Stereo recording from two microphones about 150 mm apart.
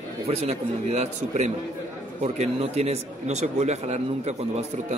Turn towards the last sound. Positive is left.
turn(degrees=-45)  # may be behind; listen again after turning